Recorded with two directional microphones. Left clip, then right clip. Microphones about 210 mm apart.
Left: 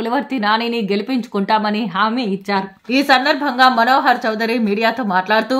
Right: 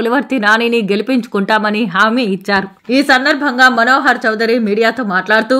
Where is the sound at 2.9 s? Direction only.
10° right (ahead or behind).